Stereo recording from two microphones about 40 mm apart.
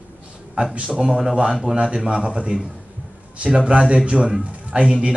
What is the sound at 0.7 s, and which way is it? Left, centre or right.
A man's voice, right.